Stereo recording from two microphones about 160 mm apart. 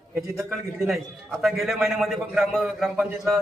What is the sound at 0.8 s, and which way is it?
A man's voice, centre (ahead or behind).